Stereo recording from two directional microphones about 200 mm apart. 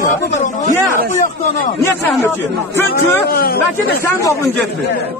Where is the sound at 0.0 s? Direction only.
35° left (ahead or behind).